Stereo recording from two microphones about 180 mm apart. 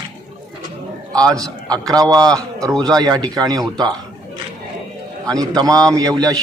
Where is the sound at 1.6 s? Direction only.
20° right (ahead or behind).